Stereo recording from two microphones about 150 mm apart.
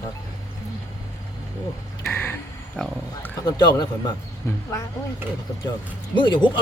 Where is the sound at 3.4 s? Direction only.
25° left (ahead or behind).